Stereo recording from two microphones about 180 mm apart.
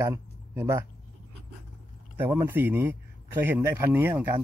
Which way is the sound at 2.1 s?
10° right (ahead or behind).